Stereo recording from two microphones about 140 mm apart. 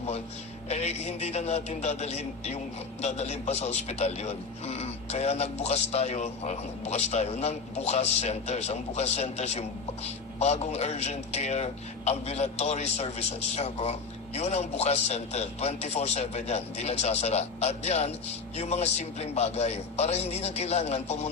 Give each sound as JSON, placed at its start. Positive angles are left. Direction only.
{"t": 0.7, "sound": "a man's voice", "side_deg": 50}